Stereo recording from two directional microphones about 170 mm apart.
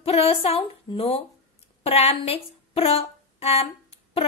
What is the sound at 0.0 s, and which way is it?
A woman's voice, 35° left (ahead or behind).